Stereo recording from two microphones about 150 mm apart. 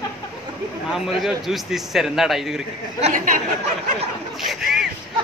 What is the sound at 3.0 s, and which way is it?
Speech, 60° right (ahead or behind).